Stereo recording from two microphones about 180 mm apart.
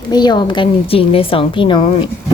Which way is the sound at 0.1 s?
25° left (ahead or behind).